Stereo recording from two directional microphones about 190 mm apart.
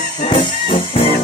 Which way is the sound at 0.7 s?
30° left (ahead or behind).